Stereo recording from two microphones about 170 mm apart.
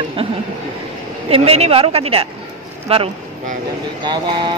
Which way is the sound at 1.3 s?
35° right (ahead or behind).